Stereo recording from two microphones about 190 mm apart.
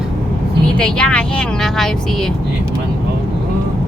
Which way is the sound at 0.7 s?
5° left (ahead or behind).